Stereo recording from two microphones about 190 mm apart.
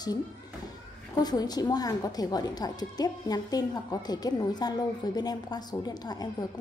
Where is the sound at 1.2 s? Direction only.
20° left (ahead or behind).